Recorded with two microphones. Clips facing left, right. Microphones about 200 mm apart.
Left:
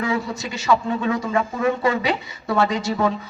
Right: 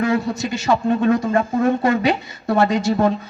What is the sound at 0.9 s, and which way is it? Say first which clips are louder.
A man's voice: right 6 dB; 60° right (ahead or behind).